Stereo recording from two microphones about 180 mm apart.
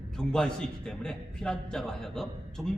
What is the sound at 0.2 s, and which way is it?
A man's voice, 5° left (ahead or behind).